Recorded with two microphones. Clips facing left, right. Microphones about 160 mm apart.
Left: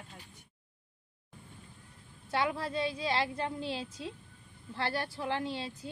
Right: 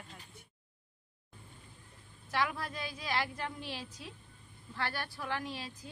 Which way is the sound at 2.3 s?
30° left (ahead or behind).